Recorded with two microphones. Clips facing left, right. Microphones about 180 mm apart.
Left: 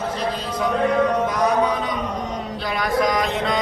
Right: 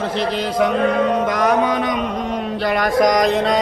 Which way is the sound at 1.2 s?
80° right.